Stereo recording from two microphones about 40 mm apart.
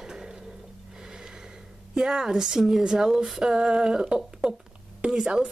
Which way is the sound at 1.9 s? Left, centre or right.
Centre.